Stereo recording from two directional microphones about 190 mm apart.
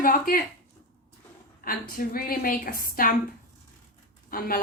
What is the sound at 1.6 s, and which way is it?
A woman's voice, 50° left (ahead or behind).